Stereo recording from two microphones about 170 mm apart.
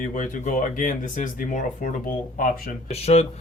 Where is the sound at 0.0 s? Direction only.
50° left (ahead or behind).